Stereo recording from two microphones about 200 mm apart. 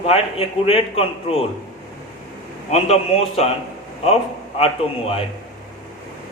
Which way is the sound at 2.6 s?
30° left (ahead or behind).